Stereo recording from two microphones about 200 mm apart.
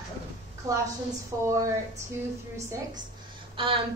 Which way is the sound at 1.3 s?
10° right (ahead or behind).